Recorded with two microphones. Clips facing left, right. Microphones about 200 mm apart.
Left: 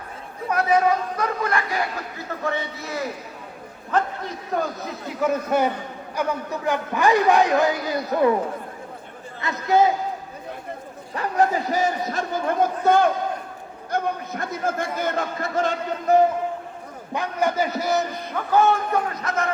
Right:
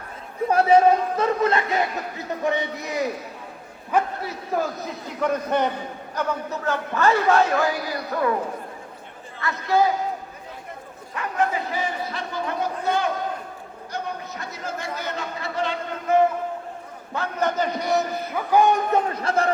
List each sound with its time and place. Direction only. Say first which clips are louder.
0.4 s a man's voice: right 4 dB; 30° right (ahead or behind)
3.9 s a man's voice: right 1 dB; 5° right (ahead or behind); by 8.3 s 20° left (ahead or behind)
9.4 s a man's voice: left 2 dB; 20° left (ahead or behind)
11.1 s a man's voice: left 3 dB; 35° left (ahead or behind)
17.2 s a man's voice: left 1 dB; 10° left (ahead or behind)
18.5 s a man's voice: even; 15° right (ahead or behind)
19.1 s speech: right 3 dB; 30° right (ahead or behind)